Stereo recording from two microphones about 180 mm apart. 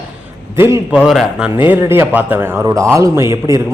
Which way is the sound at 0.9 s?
Centre (ahead or behind).